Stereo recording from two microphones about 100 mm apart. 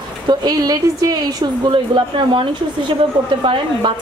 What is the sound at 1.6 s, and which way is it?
A woman's voice, 55° right (ahead or behind).